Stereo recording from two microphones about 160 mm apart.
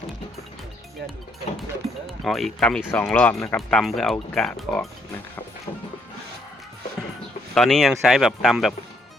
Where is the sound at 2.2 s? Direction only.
Centre (ahead or behind).